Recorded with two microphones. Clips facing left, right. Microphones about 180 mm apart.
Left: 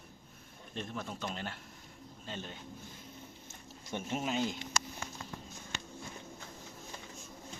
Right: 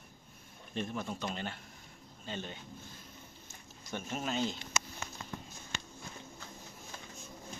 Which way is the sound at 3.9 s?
20° left (ahead or behind).